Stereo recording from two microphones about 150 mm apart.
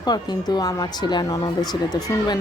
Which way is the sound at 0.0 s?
25° left (ahead or behind).